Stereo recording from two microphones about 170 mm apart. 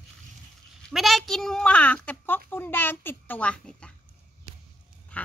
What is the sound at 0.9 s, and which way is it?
A child's voice, centre (ahead or behind).